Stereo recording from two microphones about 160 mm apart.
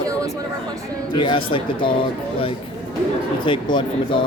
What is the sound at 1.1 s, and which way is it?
Speech, 30° left (ahead or behind).